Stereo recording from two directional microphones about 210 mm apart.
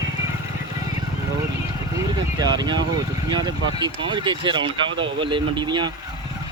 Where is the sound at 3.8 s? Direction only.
20° right (ahead or behind).